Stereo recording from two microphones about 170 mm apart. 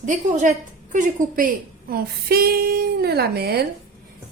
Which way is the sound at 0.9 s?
50° right (ahead or behind).